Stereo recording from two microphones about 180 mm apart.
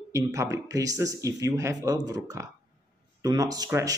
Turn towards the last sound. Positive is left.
turn(degrees=-20)  # may be behind; listen again after turning